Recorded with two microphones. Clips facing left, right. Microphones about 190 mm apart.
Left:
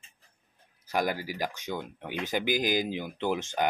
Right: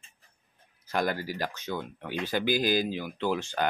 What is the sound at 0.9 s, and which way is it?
Speech, 10° left (ahead or behind).